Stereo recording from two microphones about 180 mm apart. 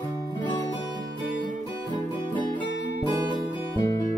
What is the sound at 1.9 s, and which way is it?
Music, 25° left (ahead or behind).